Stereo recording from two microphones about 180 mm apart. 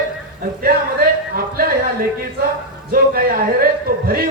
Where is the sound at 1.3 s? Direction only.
55° right (ahead or behind).